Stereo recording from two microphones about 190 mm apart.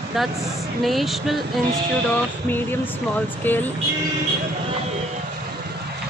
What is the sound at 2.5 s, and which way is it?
Speech, 10° left (ahead or behind).